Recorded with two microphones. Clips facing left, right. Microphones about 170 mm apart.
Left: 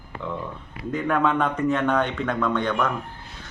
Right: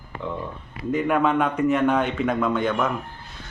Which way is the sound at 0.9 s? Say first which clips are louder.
Right 2 dB; 10° right (ahead or behind).